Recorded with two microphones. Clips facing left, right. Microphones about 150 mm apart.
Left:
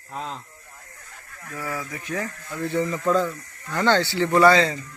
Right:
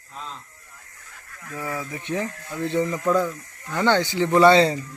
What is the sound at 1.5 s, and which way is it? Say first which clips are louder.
Speech: right 1 dB; 20° right (ahead or behind).